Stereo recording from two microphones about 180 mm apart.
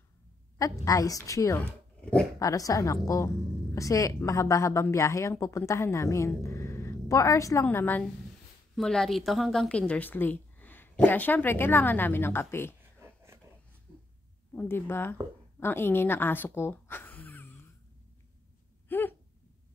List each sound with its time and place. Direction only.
0.8 s a woman's voice: 20° left (ahead or behind)
2.0 s dog: 5° left (ahead or behind)
2.3 s a woman's voice: 20° left (ahead or behind)
13.0 s a sound: 15° right (ahead or behind)
14.5 s a woman's voice: 10° left (ahead or behind)
18.9 s a sound: 10° left (ahead or behind)